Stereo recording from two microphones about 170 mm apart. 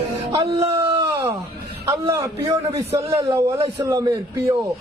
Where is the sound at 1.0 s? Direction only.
20° right (ahead or behind).